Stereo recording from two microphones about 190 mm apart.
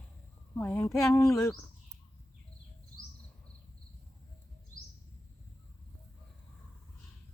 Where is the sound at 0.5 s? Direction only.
10° left (ahead or behind).